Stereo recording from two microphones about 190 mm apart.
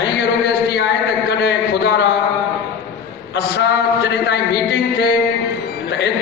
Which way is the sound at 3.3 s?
65° left (ahead or behind).